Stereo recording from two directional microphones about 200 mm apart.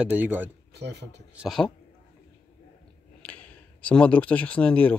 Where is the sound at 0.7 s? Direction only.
55° right (ahead or behind).